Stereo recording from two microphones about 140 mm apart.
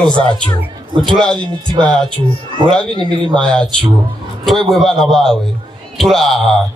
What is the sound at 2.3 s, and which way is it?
Speech, 35° left (ahead or behind).